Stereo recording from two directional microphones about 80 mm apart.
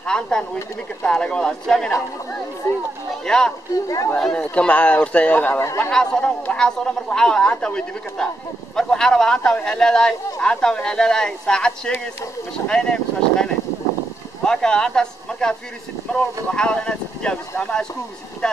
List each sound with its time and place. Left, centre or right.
0.0 s speech: centre
3.3 s speech: centre
5.8 s speech: centre
18.4 s vehicle: centre